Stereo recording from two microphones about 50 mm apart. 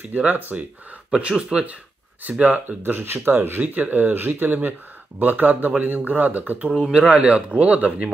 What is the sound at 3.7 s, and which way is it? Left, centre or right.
Speech, right.